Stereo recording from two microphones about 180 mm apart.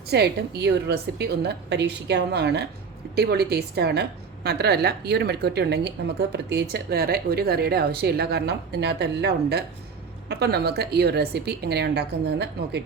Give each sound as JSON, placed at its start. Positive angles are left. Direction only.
{"t": 0.1, "sound": "a woman's voice", "side_deg": -65}